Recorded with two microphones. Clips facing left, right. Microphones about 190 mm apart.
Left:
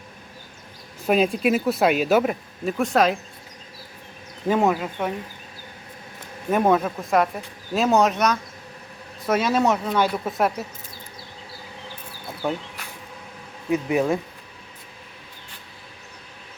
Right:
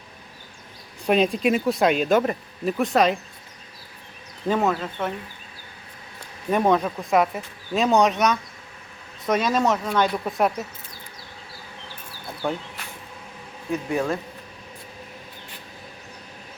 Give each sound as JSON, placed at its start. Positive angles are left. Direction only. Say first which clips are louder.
{"t": 1.0, "sound": "speech", "louder": "even", "side_deg": 5}
{"t": 4.4, "sound": "speech", "louder": "left 2 dB", "side_deg": 10}
{"t": 6.5, "sound": "speech", "louder": "left 1 dB", "side_deg": 5}
{"t": 12.4, "sound": "speech", "louder": "left 1 dB", "side_deg": 5}
{"t": 13.7, "sound": "speech", "louder": "left 3 dB", "side_deg": 20}